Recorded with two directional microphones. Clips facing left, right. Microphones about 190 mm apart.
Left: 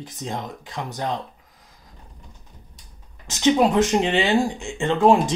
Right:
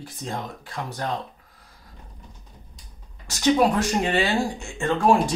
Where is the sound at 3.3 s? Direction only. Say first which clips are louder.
Left 2 dB; 20° left (ahead or behind).